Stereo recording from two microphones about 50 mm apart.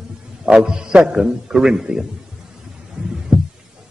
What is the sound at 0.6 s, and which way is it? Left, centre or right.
A man's voice, centre.